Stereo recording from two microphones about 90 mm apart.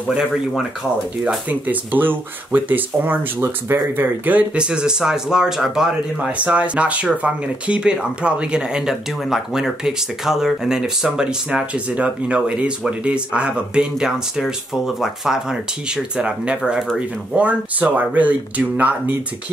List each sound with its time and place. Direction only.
1.2 s speech: 15° right (ahead or behind)